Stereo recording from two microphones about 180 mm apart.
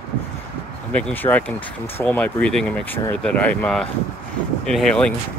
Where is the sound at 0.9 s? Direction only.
10° left (ahead or behind).